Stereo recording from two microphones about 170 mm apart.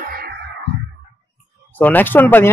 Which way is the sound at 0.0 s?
60° right (ahead or behind).